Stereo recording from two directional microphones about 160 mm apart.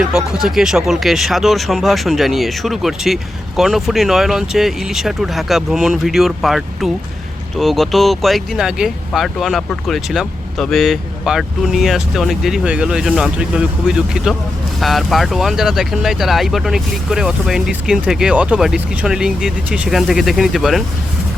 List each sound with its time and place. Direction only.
0.1 s speech: 5° right (ahead or behind)